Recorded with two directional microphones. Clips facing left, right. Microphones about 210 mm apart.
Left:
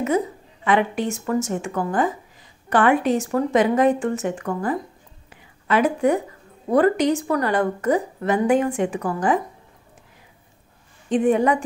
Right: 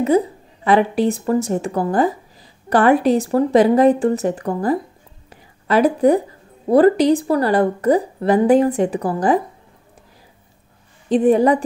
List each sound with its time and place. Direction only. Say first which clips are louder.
0.0 s a woman's voice: right 5 dB; 35° right (ahead or behind)
5.3 s a sound: right 4 dB; 35° right (ahead or behind)
6.7 s a woman's voice: right 5 dB; 35° right (ahead or behind)
11.1 s a woman's voice: right 4 dB; 35° right (ahead or behind)